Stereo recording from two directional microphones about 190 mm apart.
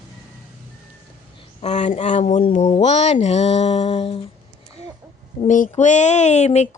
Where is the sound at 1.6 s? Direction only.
35° left (ahead or behind).